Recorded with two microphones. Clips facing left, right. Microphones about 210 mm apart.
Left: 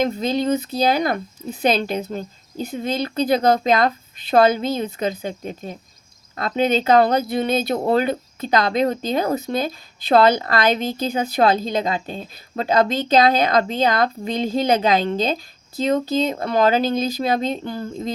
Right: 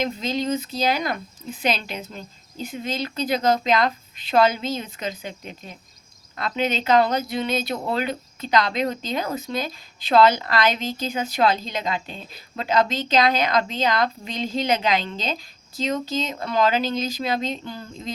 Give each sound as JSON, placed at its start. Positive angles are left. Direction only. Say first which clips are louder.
{"t": 0.0, "sound": "a woman's voice", "louder": "left 5 dB", "side_deg": 55}